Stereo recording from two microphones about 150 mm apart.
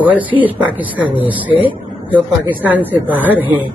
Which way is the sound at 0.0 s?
10° right (ahead or behind).